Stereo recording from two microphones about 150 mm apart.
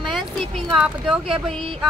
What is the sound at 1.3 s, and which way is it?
Speech, 40° right (ahead or behind).